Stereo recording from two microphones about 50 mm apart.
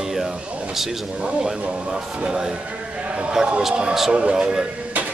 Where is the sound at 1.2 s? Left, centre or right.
Centre.